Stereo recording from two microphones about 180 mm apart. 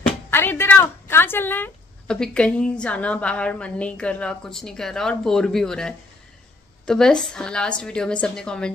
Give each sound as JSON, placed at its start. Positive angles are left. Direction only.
{"t": 0.0, "sound": "speech", "side_deg": 10}